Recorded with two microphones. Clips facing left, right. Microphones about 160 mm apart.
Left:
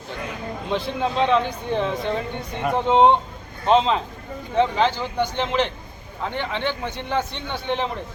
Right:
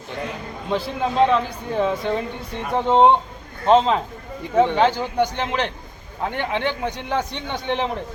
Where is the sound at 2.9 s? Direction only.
10° right (ahead or behind).